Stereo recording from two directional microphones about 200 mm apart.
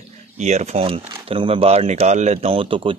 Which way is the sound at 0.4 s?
35° right (ahead or behind).